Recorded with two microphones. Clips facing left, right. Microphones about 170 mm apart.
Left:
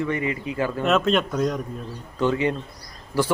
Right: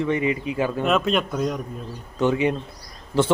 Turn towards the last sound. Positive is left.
turn(degrees=-25)  # may be behind; listen again after turning